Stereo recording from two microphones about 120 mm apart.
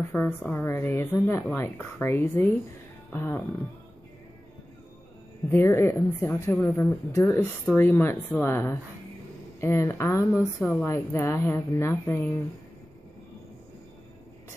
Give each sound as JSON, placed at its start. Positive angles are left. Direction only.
{"t": 0.0, "sound": "speech", "side_deg": 15}
{"t": 5.5, "sound": "speech", "side_deg": 25}